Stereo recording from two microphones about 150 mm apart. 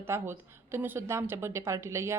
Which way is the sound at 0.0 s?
15° right (ahead or behind).